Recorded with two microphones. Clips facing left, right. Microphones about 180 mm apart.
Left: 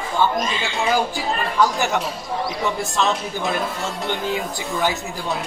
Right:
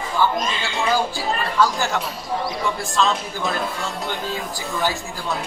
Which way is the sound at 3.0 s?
20° left (ahead or behind).